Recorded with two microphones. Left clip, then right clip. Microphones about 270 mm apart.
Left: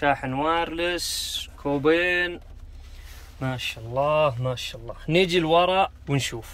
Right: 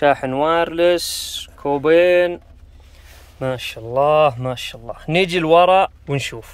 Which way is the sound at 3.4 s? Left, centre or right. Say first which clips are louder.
Right 7 dB; centre.